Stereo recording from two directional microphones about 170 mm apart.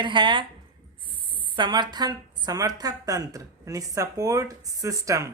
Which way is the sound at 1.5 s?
25° right (ahead or behind).